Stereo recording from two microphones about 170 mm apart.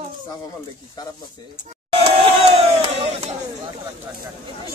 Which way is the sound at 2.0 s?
35° right (ahead or behind).